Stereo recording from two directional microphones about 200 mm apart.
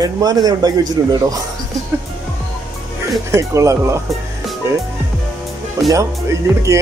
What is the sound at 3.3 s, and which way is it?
Speech, 15° right (ahead or behind).